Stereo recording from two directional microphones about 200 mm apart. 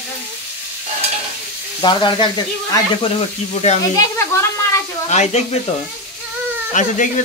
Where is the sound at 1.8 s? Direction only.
20° left (ahead or behind).